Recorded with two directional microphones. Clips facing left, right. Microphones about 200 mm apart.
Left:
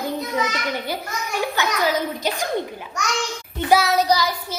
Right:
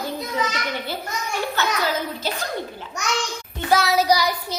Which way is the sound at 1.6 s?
15° left (ahead or behind).